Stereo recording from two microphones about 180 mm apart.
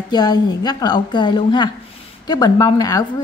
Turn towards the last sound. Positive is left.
turn(degrees=20)  # may be behind; listen again after turning